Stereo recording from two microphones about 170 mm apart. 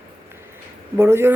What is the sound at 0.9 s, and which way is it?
Speech, 15° right (ahead or behind).